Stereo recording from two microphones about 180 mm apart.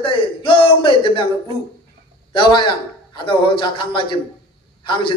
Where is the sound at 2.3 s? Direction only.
25° left (ahead or behind).